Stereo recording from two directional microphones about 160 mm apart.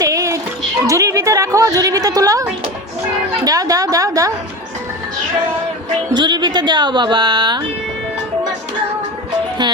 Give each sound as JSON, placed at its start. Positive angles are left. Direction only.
{"t": 0.0, "sound": "music", "side_deg": -20}
{"t": 3.4, "sound": "a sound", "side_deg": -20}
{"t": 6.1, "sound": "speech", "side_deg": -30}